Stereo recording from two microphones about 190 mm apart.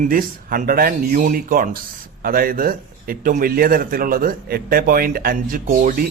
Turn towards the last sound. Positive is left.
turn(degrees=-45)  # may be behind; listen again after turning